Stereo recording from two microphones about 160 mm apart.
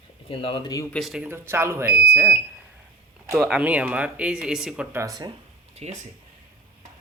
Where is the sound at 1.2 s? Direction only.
15° right (ahead or behind).